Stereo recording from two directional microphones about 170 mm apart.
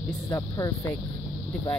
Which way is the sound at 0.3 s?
20° left (ahead or behind).